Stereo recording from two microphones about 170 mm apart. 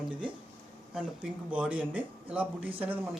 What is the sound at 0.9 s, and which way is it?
A man's voice, 5° right (ahead or behind).